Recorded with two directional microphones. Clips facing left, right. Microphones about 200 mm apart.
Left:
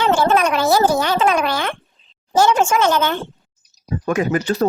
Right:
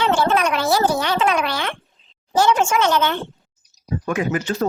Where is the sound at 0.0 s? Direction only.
45° left (ahead or behind).